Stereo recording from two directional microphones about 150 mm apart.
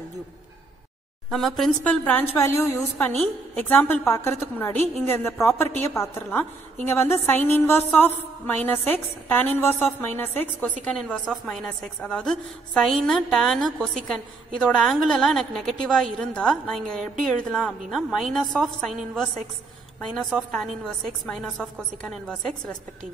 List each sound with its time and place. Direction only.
1.3 s a woman's voice: centre (ahead or behind)
2.3 s a woman's voice: 20° left (ahead or behind)